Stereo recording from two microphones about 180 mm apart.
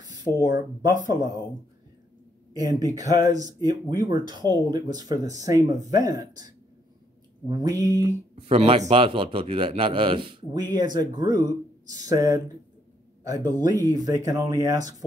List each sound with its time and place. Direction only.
0.0 s speech: 20° right (ahead or behind)
2.5 s a man's voice: 20° right (ahead or behind)
8.4 s a man's voice: 30° right (ahead or behind)